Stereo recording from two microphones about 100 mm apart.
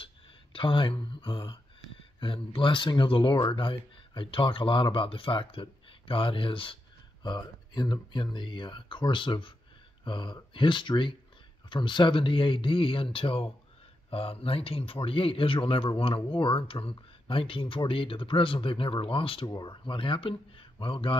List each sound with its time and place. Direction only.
0.0 s a man's voice: 60° left (ahead or behind)
7.2 s a man's voice: 45° left (ahead or behind); by 19.4 s 65° left (ahead or behind)
19.4 s a man's voice: 45° left (ahead or behind); by 21.2 s 60° left (ahead or behind)